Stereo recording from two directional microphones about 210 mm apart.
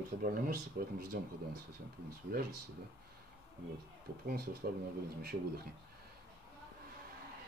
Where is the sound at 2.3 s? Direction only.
45° right (ahead or behind).